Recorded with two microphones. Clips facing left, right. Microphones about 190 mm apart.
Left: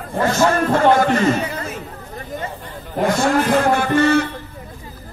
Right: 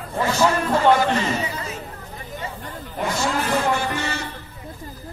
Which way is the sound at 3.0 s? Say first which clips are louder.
Left 7 dB; 55° left (ahead or behind).